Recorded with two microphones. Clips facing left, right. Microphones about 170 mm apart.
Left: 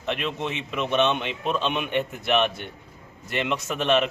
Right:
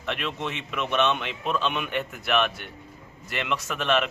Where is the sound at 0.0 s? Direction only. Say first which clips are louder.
Left 2 dB; 20° left (ahead or behind).